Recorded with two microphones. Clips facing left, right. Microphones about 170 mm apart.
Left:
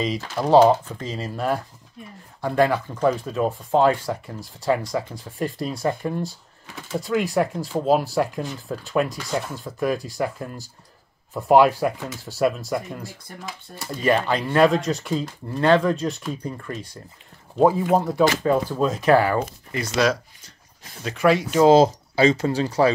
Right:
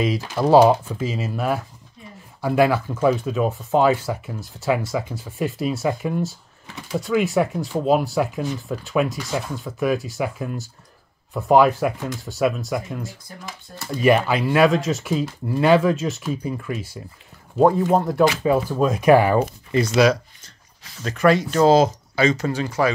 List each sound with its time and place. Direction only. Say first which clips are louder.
0.0 s speech: right 3 dB; 5° right (ahead or behind)
17.6 s speech: right 1 dB; 5° left (ahead or behind)
18.4 s speech: right 1 dB; 10° right (ahead or behind)
21.0 s speech: right 2 dB; 5° left (ahead or behind)
21.6 s speech: left 1 dB; 25° left (ahead or behind)